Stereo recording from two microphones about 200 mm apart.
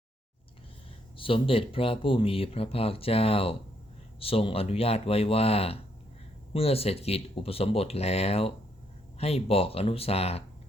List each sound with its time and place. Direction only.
1.1 s speech: 25° left (ahead or behind)